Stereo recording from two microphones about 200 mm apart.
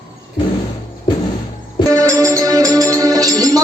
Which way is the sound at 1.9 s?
15° right (ahead or behind).